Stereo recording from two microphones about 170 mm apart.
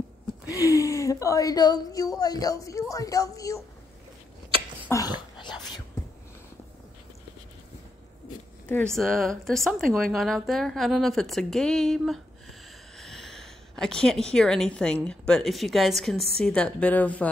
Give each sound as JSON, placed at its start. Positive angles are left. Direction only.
{"t": 0.5, "sound": "a woman's voice", "side_deg": 20}
{"t": 4.8, "sound": "a sound", "side_deg": 20}
{"t": 8.9, "sound": "a woman's voice", "side_deg": 0}